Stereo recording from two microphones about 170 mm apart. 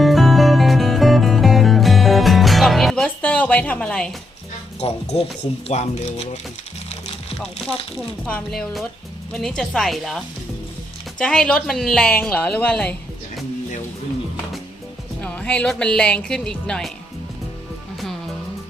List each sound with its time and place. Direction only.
0.0 s music: centre (ahead or behind)
4.8 s speech: 35° left (ahead or behind)
7.9 s a woman's voice: 5° left (ahead or behind)
15.2 s a woman's voice: 10° left (ahead or behind)